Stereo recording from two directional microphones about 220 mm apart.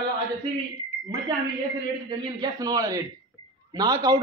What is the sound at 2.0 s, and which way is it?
A man's voice, 15° right (ahead or behind).